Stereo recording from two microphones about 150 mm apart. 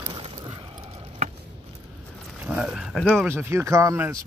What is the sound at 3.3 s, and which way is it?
Speech, 15° right (ahead or behind).